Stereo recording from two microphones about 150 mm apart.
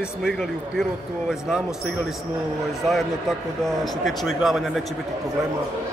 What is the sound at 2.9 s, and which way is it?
A man's voice, centre (ahead or behind).